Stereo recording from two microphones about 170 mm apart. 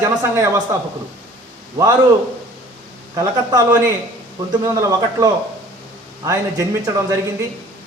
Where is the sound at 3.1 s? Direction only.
20° right (ahead or behind).